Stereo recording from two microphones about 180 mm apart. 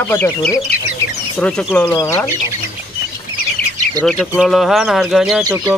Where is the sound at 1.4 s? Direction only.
5° left (ahead or behind).